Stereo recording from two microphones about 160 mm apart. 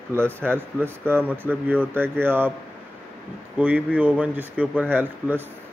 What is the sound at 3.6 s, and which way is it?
Speech, 10° right (ahead or behind).